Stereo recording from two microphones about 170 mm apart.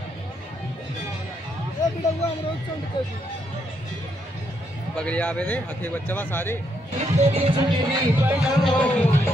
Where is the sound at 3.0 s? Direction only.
25° left (ahead or behind).